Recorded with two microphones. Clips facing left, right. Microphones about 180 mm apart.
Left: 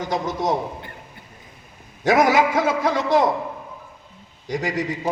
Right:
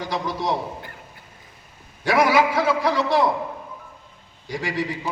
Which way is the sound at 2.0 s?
45° left (ahead or behind).